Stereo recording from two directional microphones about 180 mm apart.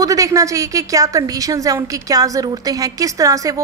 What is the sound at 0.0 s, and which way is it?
A woman's voice, 20° right (ahead or behind).